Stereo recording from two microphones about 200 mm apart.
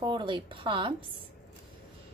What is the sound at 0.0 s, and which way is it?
Speech, 25° right (ahead or behind).